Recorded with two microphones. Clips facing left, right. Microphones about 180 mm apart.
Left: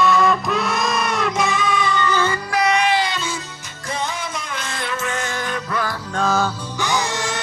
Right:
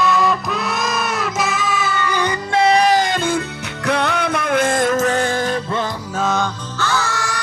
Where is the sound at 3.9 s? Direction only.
65° right (ahead or behind); by 5.9 s 30° right (ahead or behind).